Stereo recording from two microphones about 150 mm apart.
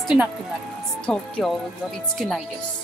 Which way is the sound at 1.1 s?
5° left (ahead or behind).